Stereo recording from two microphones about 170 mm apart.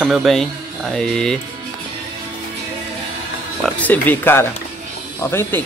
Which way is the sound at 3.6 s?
10° left (ahead or behind).